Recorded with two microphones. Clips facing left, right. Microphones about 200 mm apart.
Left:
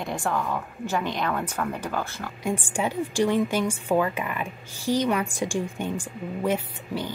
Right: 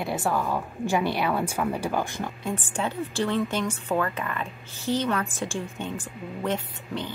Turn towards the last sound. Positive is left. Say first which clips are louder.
# left 2 dB
turn(degrees=10)  # may be behind; listen again after turning